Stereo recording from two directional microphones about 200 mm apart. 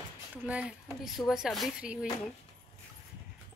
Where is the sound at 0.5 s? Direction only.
5° right (ahead or behind).